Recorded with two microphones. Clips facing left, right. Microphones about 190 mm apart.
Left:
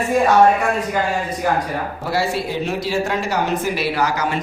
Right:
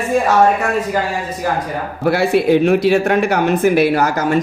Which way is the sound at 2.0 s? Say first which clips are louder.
Right 10 dB; 60° right (ahead or behind).